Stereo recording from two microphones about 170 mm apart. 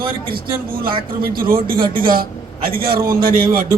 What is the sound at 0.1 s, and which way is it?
A man's voice, 60° right (ahead or behind).